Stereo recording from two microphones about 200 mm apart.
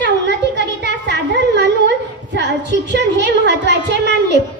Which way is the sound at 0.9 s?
60° right (ahead or behind).